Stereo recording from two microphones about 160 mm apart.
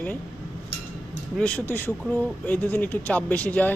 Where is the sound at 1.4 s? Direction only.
10° left (ahead or behind).